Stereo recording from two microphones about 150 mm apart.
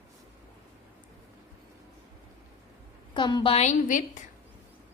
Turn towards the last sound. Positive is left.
turn(degrees=55)  # may be behind; listen again after turning